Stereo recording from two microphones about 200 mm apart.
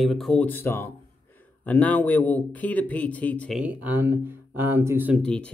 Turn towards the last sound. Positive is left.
turn(degrees=5)  # may be behind; listen again after turning